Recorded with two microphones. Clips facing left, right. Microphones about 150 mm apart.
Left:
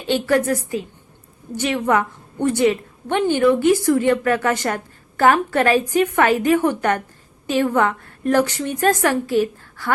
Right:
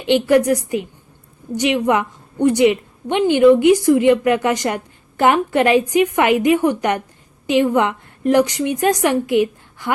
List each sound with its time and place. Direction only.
0.0 s a woman's voice: 20° right (ahead or behind)